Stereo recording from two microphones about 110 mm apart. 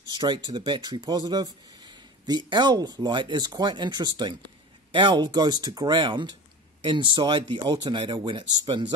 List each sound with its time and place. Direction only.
0.1 s speech: 40° right (ahead or behind)